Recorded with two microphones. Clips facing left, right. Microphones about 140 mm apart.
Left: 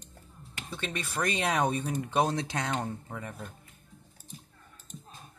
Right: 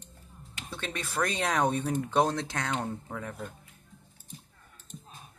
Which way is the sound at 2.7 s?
5° left (ahead or behind).